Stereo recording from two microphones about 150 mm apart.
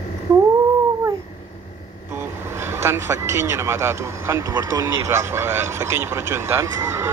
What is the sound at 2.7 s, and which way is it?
Speech, 15° right (ahead or behind).